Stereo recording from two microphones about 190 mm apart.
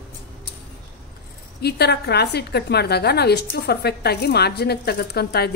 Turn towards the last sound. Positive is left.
turn(degrees=55)  # may be behind; listen again after turning